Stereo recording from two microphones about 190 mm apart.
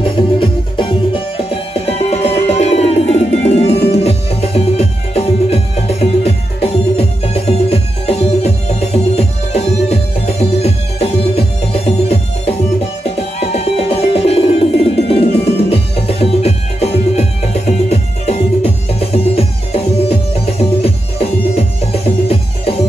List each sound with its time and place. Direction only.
0.0 s music: 25° left (ahead or behind)